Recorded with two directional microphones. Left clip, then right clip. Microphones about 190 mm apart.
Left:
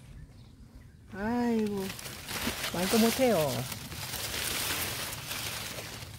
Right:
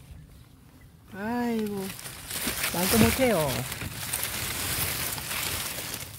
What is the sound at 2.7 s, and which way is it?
Speech, 20° right (ahead or behind).